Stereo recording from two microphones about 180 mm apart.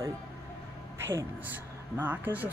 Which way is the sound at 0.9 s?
15° right (ahead or behind).